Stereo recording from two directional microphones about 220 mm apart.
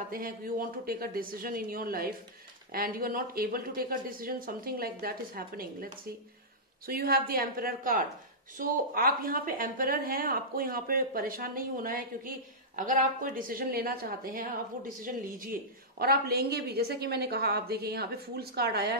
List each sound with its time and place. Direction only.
0.1 s speech: 40° right (ahead or behind)
6.9 s a woman's voice: 40° right (ahead or behind)